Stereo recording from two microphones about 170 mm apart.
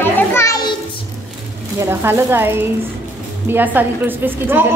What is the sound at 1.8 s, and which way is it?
A woman's voice, 15° right (ahead or behind).